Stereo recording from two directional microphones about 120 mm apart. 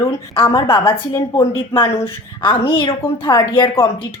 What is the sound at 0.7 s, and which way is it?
Speech, 45° left (ahead or behind).